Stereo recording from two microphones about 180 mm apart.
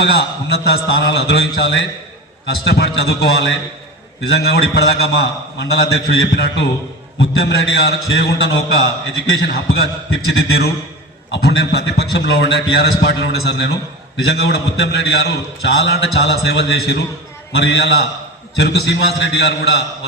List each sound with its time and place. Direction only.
0.0 s a man's voice: 65° left (ahead or behind)